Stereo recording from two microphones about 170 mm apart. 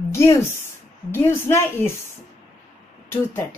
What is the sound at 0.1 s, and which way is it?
A woman's voice, 15° left (ahead or behind).